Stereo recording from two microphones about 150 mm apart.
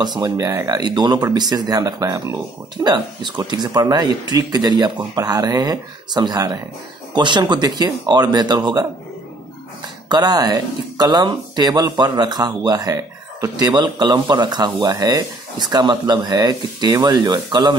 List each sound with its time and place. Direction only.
0.0 s speech: 25° right (ahead or behind)
10.0 s speech: 25° right (ahead or behind)